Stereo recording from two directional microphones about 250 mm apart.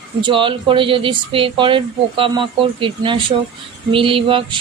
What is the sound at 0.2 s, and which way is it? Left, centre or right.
Speech, centre.